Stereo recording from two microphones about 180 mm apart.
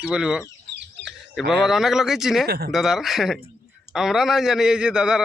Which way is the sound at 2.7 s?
Centre (ahead or behind).